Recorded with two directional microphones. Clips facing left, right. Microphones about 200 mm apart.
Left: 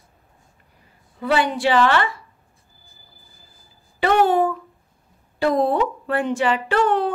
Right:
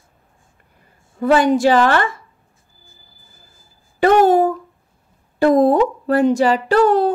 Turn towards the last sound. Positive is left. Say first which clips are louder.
# right 6 dB
turn(degrees=-40)  # may be behind; listen again after turning